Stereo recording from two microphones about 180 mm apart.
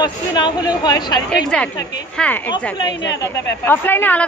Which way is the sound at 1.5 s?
5° left (ahead or behind).